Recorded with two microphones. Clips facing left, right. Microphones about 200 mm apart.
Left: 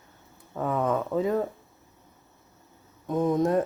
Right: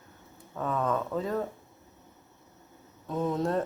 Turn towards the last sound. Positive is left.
turn(degrees=15)  # may be behind; listen again after turning